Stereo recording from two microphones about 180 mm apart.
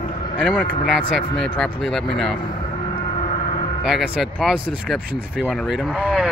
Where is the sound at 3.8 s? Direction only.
Centre (ahead or behind).